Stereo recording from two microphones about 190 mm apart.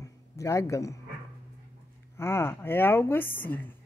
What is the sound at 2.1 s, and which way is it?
Speech, 15° left (ahead or behind).